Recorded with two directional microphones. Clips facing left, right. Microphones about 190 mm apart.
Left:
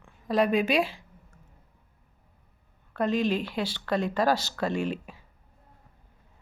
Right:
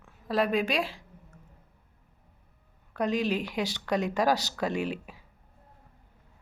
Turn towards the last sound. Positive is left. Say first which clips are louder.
# left 2 dB
turn(degrees=-10)  # may be behind; listen again after turning